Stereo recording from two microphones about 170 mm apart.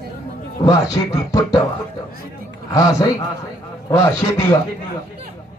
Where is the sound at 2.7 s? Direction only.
20° left (ahead or behind).